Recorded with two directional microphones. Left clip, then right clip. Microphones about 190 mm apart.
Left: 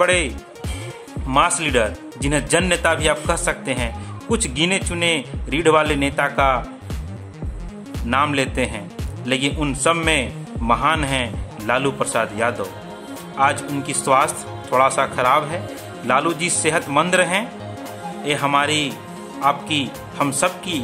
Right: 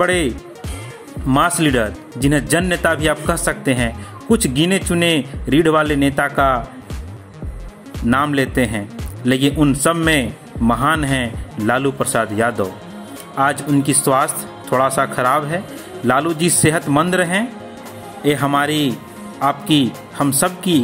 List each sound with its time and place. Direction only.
0.0 s speech: 15° right (ahead or behind)
1.3 s speech: 15° right (ahead or behind)
8.1 s speech: 20° right (ahead or behind)